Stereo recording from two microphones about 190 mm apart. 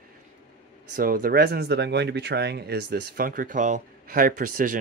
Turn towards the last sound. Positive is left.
turn(degrees=-45)  # may be behind; listen again after turning